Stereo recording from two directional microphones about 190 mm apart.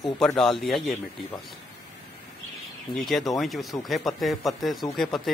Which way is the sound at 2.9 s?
Centre (ahead or behind).